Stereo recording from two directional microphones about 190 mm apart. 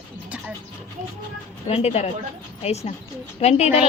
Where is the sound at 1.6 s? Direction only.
35° left (ahead or behind).